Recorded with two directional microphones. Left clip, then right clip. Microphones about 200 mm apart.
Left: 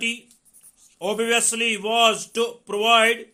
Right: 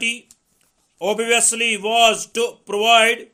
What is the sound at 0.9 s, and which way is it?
A man's voice, 25° right (ahead or behind).